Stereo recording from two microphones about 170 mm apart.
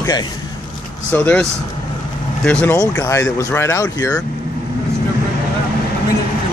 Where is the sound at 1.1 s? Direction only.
10° left (ahead or behind).